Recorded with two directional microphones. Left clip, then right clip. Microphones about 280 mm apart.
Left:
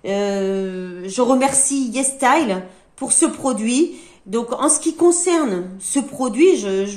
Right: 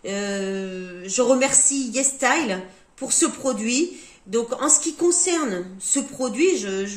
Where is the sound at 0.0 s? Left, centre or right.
Centre.